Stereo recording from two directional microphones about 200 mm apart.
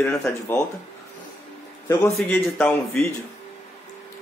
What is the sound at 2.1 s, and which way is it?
Speech, 5° left (ahead or behind).